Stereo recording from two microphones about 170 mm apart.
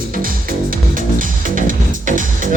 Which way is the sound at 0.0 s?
55° right (ahead or behind).